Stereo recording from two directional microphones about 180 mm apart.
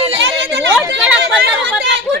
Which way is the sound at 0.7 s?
5° right (ahead or behind).